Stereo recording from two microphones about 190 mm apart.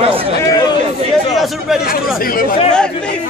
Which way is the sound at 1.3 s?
Centre (ahead or behind).